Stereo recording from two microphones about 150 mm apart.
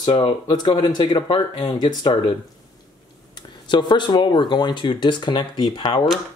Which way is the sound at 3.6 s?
30° left (ahead or behind).